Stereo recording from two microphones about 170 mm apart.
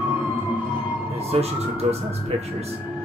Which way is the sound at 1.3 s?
35° right (ahead or behind).